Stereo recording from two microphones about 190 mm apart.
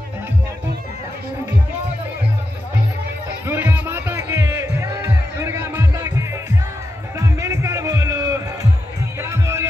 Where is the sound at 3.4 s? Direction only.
10° right (ahead or behind).